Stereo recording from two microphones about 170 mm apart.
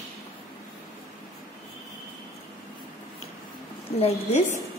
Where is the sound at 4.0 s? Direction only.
40° left (ahead or behind).